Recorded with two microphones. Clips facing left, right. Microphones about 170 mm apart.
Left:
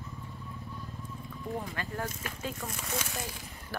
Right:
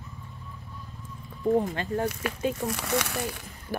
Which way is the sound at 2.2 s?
65° right (ahead or behind).